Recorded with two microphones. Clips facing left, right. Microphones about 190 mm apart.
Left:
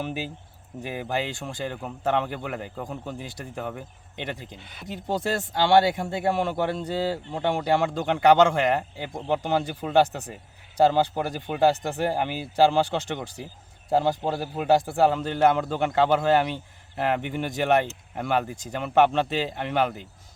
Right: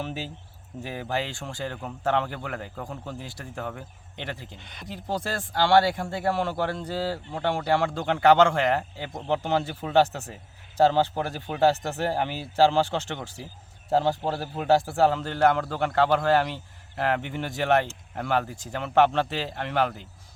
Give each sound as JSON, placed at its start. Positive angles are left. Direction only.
{"t": 0.0, "sound": "speech", "side_deg": 10}
{"t": 5.0, "sound": "speech", "side_deg": 20}
{"t": 10.1, "sound": "speech", "side_deg": 0}
{"t": 10.8, "sound": "speech", "side_deg": 10}
{"t": 14.9, "sound": "speech", "side_deg": 15}